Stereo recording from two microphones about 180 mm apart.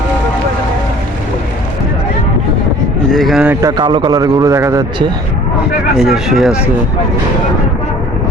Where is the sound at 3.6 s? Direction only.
25° right (ahead or behind).